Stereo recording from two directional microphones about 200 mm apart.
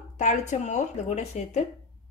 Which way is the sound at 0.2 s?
35° left (ahead or behind).